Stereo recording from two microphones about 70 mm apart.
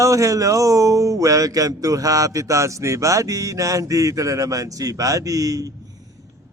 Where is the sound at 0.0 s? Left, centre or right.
Right.